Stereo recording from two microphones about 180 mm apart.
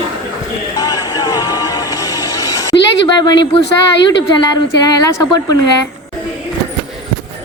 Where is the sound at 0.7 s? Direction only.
20° left (ahead or behind).